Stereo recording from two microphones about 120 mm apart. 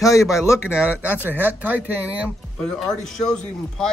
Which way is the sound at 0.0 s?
25° left (ahead or behind).